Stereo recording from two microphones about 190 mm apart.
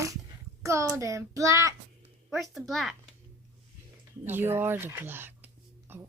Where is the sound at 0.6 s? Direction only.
15° right (ahead or behind).